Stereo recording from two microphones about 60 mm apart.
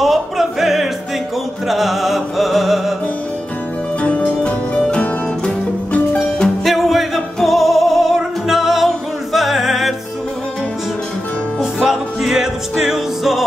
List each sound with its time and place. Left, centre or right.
0.0 s music: centre
4.0 s music: left
4.9 s music: centre
6.6 s music: centre
11.6 s music: centre